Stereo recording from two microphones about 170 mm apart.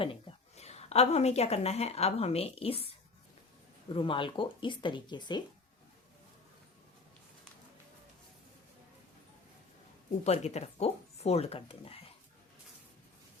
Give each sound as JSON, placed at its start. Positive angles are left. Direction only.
{"t": 0.0, "sound": "a woman's voice", "side_deg": 35}
{"t": 3.9, "sound": "speech", "side_deg": 30}
{"t": 10.2, "sound": "speech", "side_deg": 40}